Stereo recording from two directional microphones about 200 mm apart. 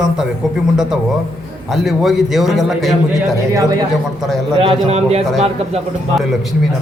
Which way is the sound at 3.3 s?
15° right (ahead or behind).